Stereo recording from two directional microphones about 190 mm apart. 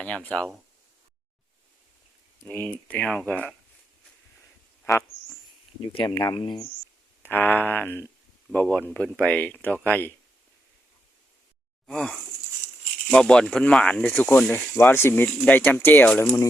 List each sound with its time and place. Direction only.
0.0 s speech: 5° left (ahead or behind)
2.4 s speech: 10° left (ahead or behind)
5.9 s speech: 25° left (ahead or behind)
7.2 s speech: 10° left (ahead or behind)
11.9 s speech: 5° left (ahead or behind)